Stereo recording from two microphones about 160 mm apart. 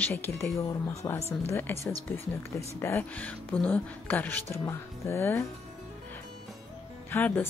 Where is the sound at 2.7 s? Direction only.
15° left (ahead or behind).